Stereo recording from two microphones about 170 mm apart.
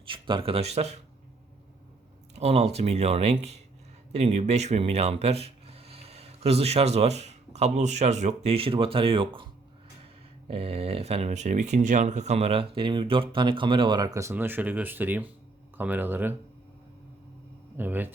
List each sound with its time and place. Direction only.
0.0 s speech: 30° right (ahead or behind)
2.3 s speech: 35° right (ahead or behind)
10.5 s speech: 35° right (ahead or behind); by 16.3 s 10° right (ahead or behind)
17.7 s speech: 10° right (ahead or behind)